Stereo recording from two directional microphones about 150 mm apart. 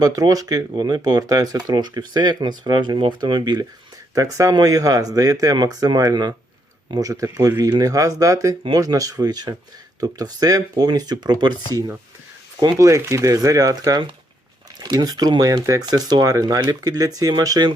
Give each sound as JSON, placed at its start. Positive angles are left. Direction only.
{"t": 0.0, "sound": "speech", "side_deg": -25}
{"t": 12.5, "sound": "speech", "side_deg": -25}